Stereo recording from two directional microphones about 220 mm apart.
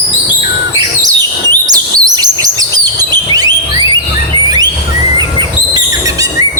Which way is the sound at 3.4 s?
15° right (ahead or behind).